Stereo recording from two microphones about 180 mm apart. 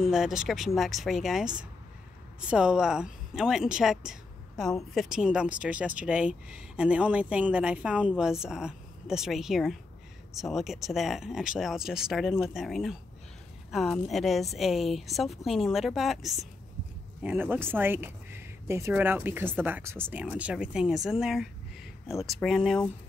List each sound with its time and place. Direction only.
0.0 s speech: centre (ahead or behind)
2.5 s speech: 5° right (ahead or behind)